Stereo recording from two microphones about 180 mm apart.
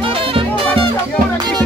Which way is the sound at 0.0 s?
30° right (ahead or behind).